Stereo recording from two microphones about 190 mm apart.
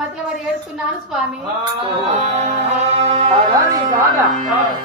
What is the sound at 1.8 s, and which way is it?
Music, 30° right (ahead or behind).